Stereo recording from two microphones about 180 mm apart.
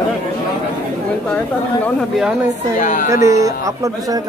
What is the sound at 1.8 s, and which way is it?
Speech, 5° right (ahead or behind).